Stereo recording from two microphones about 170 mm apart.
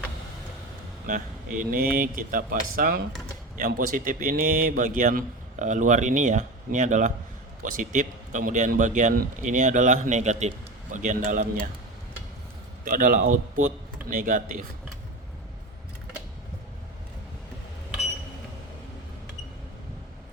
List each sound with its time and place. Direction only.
1.0 s speech: 50° right (ahead or behind)
12.8 s speech: 55° right (ahead or behind)